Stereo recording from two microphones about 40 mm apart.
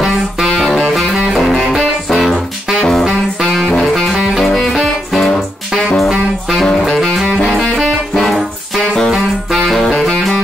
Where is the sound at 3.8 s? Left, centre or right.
Centre.